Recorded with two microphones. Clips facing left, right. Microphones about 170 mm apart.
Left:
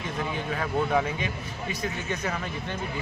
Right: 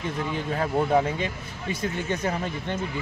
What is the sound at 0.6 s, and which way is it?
Speech, 30° right (ahead or behind).